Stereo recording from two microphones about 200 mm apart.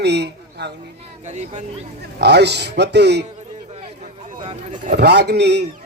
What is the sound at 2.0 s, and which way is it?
A man's voice, 55° right (ahead or behind).